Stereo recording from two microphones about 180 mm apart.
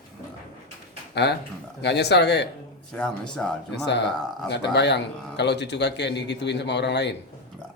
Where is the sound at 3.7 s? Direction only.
75° left (ahead or behind).